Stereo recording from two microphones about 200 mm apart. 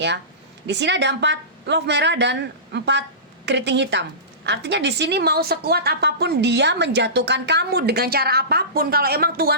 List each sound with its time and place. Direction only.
0.7 s a woman's voice: 60° right (ahead or behind)